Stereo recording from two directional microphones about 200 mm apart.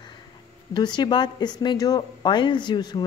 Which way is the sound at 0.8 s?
20° left (ahead or behind).